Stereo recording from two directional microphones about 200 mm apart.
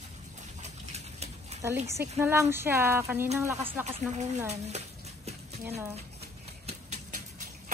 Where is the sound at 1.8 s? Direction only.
15° right (ahead or behind).